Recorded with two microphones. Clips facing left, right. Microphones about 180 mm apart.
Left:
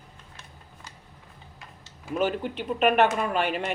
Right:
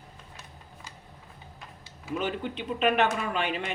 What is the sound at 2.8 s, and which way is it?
Speech, 50° left (ahead or behind).